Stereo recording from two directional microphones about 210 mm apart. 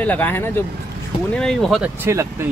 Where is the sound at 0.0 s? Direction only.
10° left (ahead or behind).